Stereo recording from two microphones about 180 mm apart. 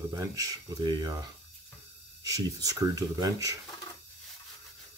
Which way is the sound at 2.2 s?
20° right (ahead or behind).